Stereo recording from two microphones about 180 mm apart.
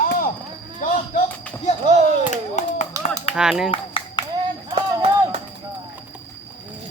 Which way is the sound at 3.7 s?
30° left (ahead or behind).